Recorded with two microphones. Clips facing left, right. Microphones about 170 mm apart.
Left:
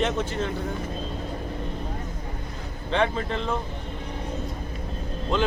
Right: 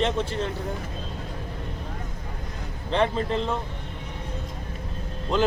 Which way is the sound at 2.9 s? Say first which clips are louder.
Right 1 dB; 35° right (ahead or behind).